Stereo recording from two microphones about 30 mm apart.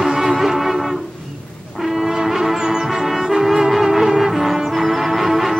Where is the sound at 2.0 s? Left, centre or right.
Centre.